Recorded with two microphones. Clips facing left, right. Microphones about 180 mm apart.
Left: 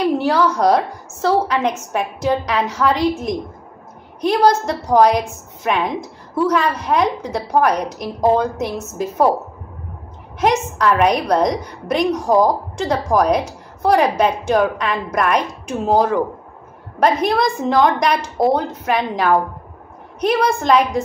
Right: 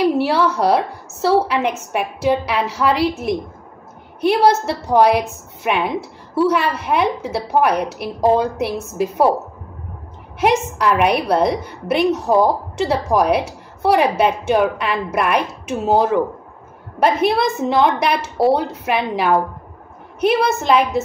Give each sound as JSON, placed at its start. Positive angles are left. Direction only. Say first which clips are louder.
{"t": 0.2, "sound": "a woman's voice", "louder": "left 1 dB", "side_deg": -5}
{"t": 10.4, "sound": "a woman's voice", "louder": "even", "side_deg": -10}